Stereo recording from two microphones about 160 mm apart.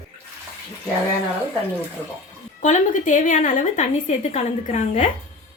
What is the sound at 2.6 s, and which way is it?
A woman's voice, 50° left (ahead or behind).